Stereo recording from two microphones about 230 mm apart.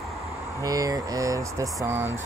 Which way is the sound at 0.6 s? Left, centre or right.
Centre.